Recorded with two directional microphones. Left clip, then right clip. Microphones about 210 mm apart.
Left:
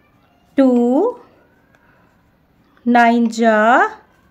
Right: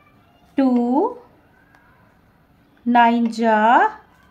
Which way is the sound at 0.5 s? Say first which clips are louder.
Left 5 dB; 40° left (ahead or behind).